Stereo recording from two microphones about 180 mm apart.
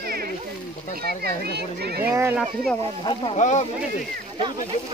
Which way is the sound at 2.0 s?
15° right (ahead or behind).